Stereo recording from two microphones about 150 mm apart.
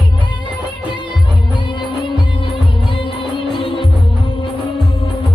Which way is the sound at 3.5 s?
35° left (ahead or behind).